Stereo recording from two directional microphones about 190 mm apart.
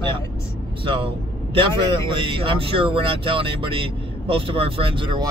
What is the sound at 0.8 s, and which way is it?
Speech, 25° right (ahead or behind).